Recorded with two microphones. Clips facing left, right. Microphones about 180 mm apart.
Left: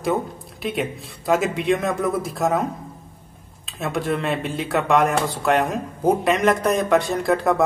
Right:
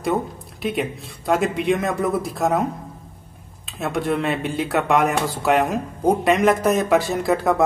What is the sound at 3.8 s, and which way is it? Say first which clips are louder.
Speech: right 1 dB; centre (ahead or behind).